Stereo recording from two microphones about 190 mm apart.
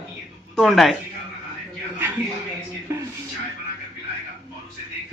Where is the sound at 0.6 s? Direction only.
Centre (ahead or behind).